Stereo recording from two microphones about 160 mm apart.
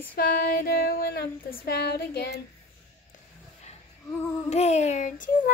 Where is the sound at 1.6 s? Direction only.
90° left.